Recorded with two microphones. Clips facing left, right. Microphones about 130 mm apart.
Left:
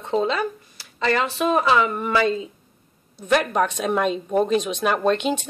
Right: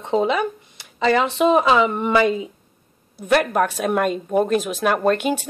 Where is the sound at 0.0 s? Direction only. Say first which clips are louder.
Right 3 dB; 15° right (ahead or behind).